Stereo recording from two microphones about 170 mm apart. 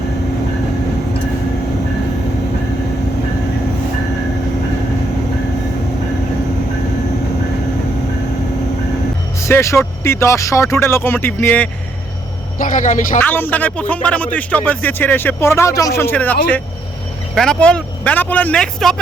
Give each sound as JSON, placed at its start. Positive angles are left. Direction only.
{"t": 9.4, "sound": "a man's voice", "side_deg": 15}
{"t": 12.5, "sound": "a woman's voice", "side_deg": 50}
{"t": 13.1, "sound": "a man's voice", "side_deg": 10}